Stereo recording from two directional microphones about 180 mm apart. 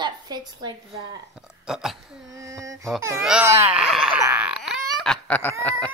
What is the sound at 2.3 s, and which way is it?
Speech, 15° right (ahead or behind).